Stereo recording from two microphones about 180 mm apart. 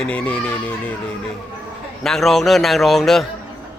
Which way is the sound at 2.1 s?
Centre (ahead or behind).